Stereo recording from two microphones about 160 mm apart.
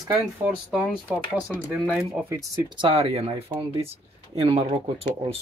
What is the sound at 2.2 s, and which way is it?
Speech, 15° right (ahead or behind).